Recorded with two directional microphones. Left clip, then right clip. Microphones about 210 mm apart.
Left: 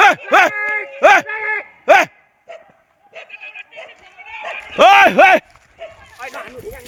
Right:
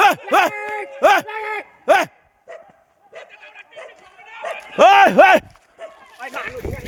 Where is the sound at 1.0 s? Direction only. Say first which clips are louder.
Left 4 dB; 10° right (ahead or behind).